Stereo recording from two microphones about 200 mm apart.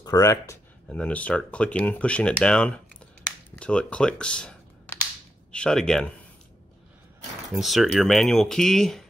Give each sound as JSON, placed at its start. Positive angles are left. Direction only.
{"t": 0.0, "sound": "speech", "side_deg": 15}
{"t": 0.8, "sound": "speech", "side_deg": 5}
{"t": 7.5, "sound": "speech", "side_deg": 0}